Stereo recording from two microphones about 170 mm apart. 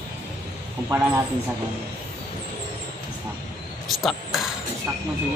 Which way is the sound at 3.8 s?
Centre (ahead or behind).